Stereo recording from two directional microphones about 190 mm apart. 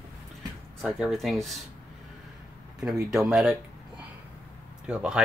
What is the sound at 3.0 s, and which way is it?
Speech, 5° right (ahead or behind).